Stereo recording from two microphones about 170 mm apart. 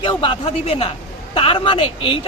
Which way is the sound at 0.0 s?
30° left (ahead or behind).